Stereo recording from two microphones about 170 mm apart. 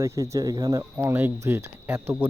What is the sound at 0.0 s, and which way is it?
Speech, 15° right (ahead or behind).